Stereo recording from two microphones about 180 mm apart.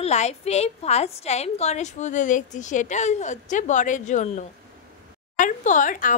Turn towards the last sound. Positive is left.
turn(degrees=45)  # may be behind; listen again after turning